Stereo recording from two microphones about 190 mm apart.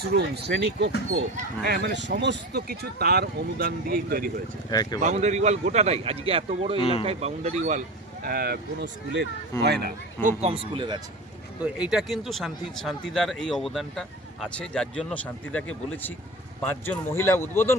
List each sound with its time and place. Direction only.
0.0 s speech: 60° right (ahead or behind)
4.7 s speech: 20° left (ahead or behind)
4.9 s speech: 35° right (ahead or behind)
6.7 s speech: 30° left (ahead or behind)
7.0 s speech: 30° right (ahead or behind)
8.2 s speech: 55° right (ahead or behind)
10.2 s speech: 35° right (ahead or behind)
11.6 s speech: 5° right (ahead or behind); by 17.7 s 10° left (ahead or behind)